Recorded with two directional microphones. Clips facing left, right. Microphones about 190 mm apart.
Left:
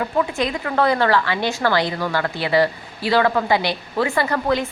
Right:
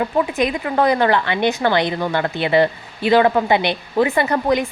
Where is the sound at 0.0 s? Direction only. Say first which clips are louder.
Right 3 dB; 20° right (ahead or behind).